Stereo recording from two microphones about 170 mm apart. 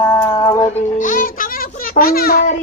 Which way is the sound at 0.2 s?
20° left (ahead or behind).